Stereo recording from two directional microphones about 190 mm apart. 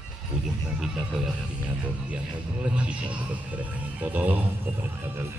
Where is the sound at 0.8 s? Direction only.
5° right (ahead or behind).